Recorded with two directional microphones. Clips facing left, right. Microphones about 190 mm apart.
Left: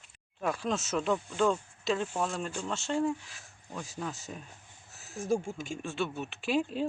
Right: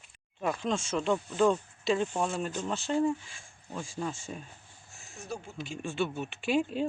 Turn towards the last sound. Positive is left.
turn(degrees=0)  # may be behind; listen again after turning